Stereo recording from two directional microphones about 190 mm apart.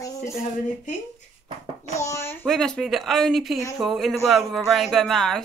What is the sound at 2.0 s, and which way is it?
Speech, 15° left (ahead or behind).